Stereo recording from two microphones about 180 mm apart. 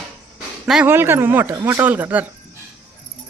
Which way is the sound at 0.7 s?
10° right (ahead or behind).